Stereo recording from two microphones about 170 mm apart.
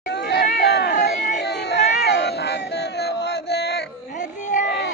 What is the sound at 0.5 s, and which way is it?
Chatter, 70° left (ahead or behind).